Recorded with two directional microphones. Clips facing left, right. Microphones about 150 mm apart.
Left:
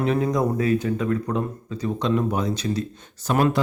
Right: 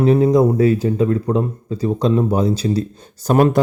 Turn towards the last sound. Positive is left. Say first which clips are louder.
# right 6 dB
turn(degrees=-45)  # may be behind; listen again after turning